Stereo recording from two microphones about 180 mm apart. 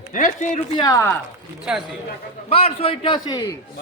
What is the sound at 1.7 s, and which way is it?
Speech, 5° right (ahead or behind).